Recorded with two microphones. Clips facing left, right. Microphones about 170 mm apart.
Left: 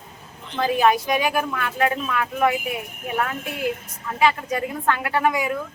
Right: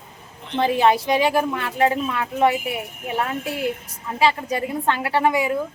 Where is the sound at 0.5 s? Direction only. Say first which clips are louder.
Right 1 dB; 25° right (ahead or behind).